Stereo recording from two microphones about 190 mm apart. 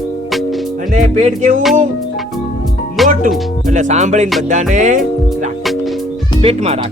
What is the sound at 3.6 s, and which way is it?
Music, 40° right (ahead or behind).